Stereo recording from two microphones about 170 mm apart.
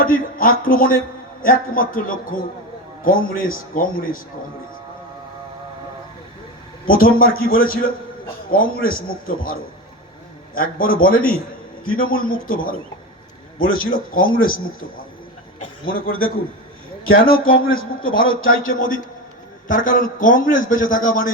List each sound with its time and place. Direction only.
0.0 s a man's voice: 55° left (ahead or behind)
6.8 s a man's voice: 55° left (ahead or behind)
15.9 s a man's voice: 60° left (ahead or behind)